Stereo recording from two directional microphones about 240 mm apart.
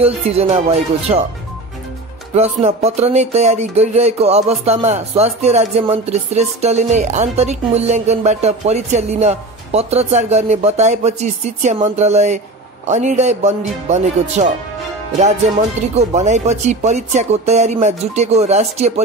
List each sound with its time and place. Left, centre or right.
0.0 s speech: right
2.3 s speech: right
16.0 s speech: right